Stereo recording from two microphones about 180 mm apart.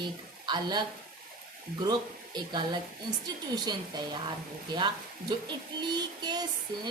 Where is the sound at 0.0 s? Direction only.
25° right (ahead or behind).